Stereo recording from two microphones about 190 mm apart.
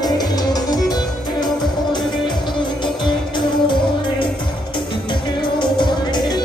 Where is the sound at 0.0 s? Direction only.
20° left (ahead or behind).